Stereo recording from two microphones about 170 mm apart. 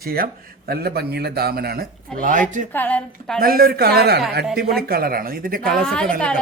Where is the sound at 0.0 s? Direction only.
60° right (ahead or behind).